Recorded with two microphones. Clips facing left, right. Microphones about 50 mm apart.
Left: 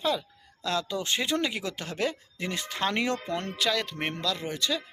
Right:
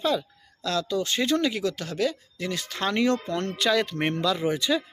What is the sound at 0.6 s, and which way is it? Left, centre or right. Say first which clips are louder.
A man's voice: right 3 dB; centre.